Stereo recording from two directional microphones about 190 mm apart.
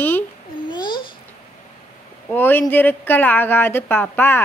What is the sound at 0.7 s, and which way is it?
Babbling, 25° left (ahead or behind).